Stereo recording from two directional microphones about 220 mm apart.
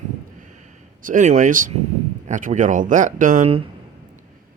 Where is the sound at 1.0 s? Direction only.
35° right (ahead or behind).